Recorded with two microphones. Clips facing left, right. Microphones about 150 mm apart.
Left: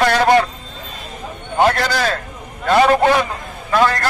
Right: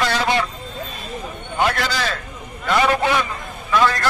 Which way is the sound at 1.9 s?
50° left (ahead or behind).